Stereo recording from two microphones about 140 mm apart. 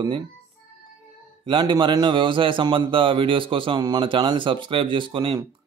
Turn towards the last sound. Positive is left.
turn(degrees=-35)  # may be behind; listen again after turning